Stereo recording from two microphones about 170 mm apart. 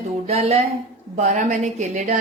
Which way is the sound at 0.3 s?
35° right (ahead or behind).